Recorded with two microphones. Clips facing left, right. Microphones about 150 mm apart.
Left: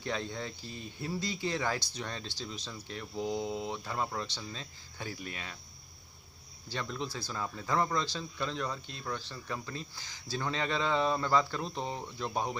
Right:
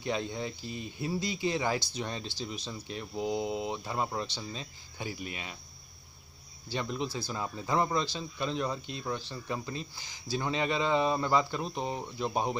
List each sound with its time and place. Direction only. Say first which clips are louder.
0.0 s speech: right 3 dB; 15° right (ahead or behind)
6.7 s speech: right 4 dB; 15° right (ahead or behind)